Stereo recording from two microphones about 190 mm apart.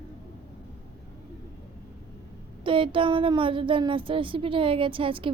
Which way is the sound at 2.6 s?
25° right (ahead or behind).